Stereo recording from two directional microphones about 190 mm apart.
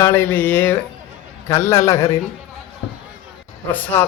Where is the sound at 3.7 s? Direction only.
10° left (ahead or behind).